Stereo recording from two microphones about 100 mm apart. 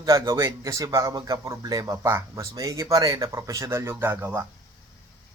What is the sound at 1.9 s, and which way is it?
Speech, 30° right (ahead or behind).